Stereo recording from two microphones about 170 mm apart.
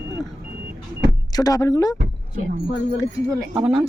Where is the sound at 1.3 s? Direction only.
20° left (ahead or behind).